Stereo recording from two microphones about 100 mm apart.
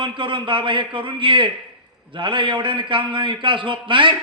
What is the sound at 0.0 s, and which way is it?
A man's voice, 55° right (ahead or behind).